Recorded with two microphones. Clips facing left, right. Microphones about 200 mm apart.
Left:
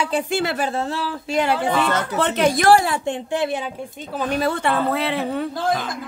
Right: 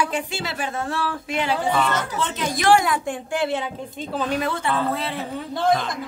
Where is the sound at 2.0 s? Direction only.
65° left (ahead or behind).